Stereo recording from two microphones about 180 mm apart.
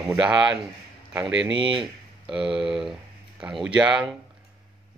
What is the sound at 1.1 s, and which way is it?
Speech, 5° right (ahead or behind).